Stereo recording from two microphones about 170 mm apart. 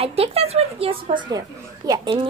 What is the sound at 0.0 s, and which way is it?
Speech, 35° right (ahead or behind).